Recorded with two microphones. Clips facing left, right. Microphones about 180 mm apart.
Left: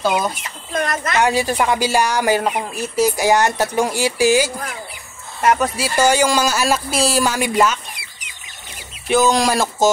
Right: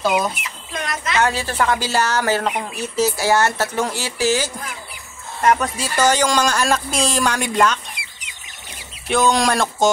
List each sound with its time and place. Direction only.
0.4 s speech: 50° left (ahead or behind)
1.2 s speech: 15° left (ahead or behind)
9.0 s speech: centre (ahead or behind)